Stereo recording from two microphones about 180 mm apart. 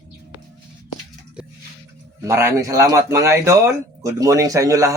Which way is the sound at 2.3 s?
15° right (ahead or behind).